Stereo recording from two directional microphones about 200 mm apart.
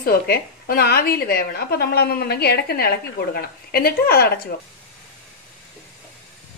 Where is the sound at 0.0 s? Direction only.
50° left (ahead or behind).